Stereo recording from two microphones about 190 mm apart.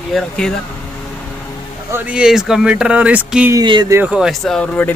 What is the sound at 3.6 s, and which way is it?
Speech, 20° right (ahead or behind).